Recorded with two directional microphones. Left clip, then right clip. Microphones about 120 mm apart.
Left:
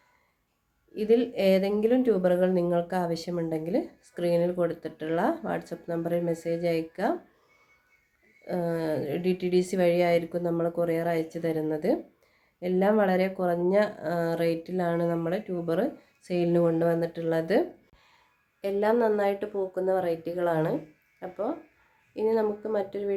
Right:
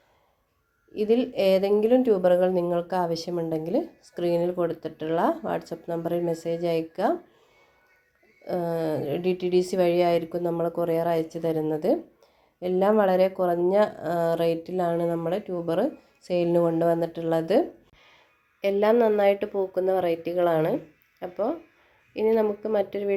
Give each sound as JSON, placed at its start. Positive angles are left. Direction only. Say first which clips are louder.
{"t": 0.9, "sound": "a woman's voice", "louder": "right 1 dB", "side_deg": -20}
{"t": 8.4, "sound": "speech", "louder": "right 2 dB", "side_deg": -20}
{"t": 18.6, "sound": "speech", "louder": "right 4 dB", "side_deg": -20}